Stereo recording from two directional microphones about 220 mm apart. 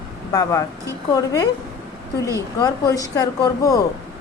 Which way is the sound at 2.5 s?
15° left (ahead or behind).